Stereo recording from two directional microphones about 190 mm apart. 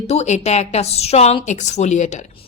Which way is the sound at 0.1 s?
35° left (ahead or behind).